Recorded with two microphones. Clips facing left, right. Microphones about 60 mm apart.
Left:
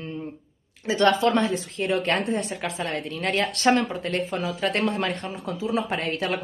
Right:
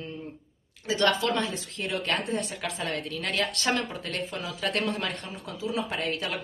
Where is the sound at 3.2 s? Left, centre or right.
Left.